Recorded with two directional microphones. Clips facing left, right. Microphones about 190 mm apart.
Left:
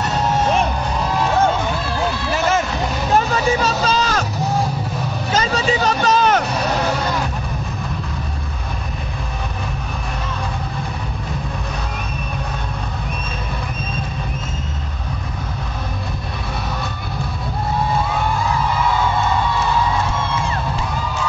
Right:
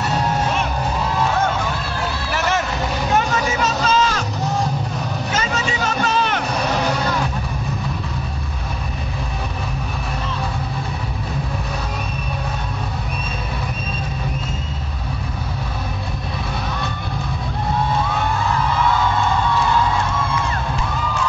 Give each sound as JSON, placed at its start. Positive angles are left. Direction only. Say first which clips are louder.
{"t": 3.2, "sound": "music", "louder": "left 4 dB", "side_deg": 35}
{"t": 5.3, "sound": "vehicle", "louder": "left 6 dB", "side_deg": 35}